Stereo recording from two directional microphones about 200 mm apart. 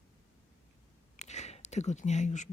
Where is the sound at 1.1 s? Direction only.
35° left (ahead or behind).